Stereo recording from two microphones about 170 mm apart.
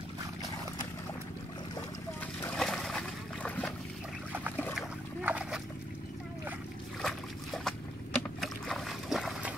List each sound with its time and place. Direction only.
2.5 s boat: centre (ahead or behind)
4.7 s a sound: 5° right (ahead or behind)
7.0 s boat: centre (ahead or behind)